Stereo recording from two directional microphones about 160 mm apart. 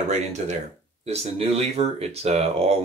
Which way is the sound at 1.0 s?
40° right (ahead or behind).